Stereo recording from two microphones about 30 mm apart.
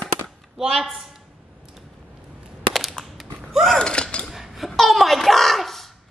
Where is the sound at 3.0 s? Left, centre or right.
Left.